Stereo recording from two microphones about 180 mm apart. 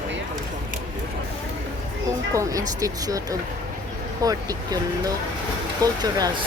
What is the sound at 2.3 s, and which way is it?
Speech, 15° right (ahead or behind).